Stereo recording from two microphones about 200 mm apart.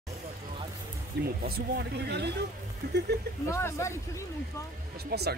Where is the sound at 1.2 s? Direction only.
50° right (ahead or behind).